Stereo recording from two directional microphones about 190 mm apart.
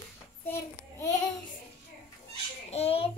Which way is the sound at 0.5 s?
15° left (ahead or behind).